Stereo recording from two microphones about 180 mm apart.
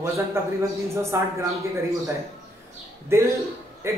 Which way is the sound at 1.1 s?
15° right (ahead or behind).